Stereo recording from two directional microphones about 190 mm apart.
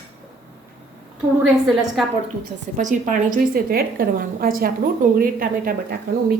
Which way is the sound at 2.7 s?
40° right (ahead or behind).